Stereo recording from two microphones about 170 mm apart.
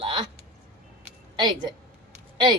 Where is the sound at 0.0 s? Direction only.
30° right (ahead or behind).